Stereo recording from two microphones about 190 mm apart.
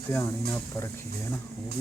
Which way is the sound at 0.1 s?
15° left (ahead or behind).